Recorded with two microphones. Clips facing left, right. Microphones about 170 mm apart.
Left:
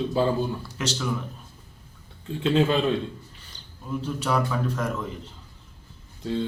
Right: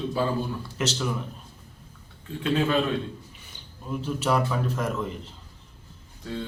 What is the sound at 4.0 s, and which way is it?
A man's voice, 5° right (ahead or behind).